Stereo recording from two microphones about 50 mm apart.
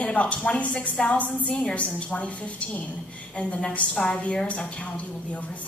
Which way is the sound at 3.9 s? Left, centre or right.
Centre.